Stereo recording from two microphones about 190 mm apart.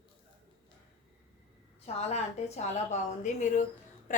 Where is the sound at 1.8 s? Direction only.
35° left (ahead or behind).